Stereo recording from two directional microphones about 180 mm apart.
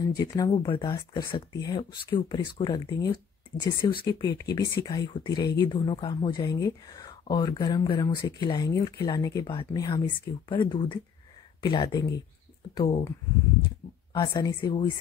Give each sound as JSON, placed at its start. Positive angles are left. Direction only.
{"t": 0.1, "sound": "speech", "side_deg": 20}
{"t": 14.1, "sound": "speech", "side_deg": 20}